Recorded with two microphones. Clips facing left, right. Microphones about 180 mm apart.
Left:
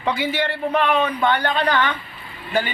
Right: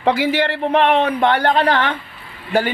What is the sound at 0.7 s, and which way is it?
Speech, 65° right (ahead or behind).